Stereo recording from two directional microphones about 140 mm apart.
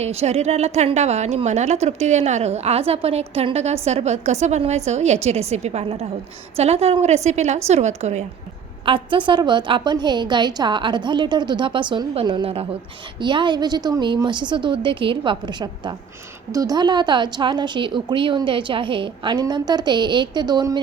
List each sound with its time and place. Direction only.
0.0 s a woman's voice: 50° right (ahead or behind)
8.9 s speech: 35° right (ahead or behind)